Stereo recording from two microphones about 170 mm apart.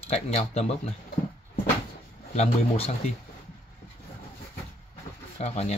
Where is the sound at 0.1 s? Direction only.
40° left (ahead or behind).